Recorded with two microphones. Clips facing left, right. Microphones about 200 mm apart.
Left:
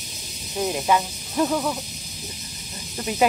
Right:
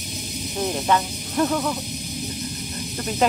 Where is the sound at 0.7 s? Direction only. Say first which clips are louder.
Even; 5° left (ahead or behind).